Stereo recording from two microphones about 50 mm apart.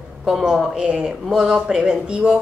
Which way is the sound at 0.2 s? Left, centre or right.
Centre.